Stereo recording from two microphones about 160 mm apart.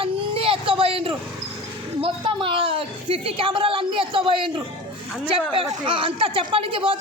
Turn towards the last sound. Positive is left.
turn(degrees=-35)  # may be behind; listen again after turning